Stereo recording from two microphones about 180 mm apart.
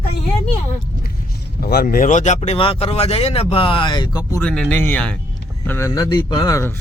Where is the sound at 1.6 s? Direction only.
60° left (ahead or behind); by 4.4 s 20° left (ahead or behind).